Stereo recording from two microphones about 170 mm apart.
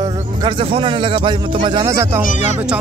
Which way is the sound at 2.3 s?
45° left (ahead or behind).